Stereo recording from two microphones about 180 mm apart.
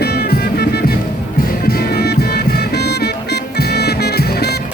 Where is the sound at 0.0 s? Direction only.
60° left (ahead or behind).